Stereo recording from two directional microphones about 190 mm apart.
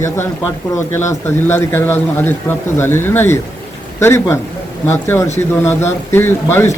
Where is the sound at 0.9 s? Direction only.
10° left (ahead or behind).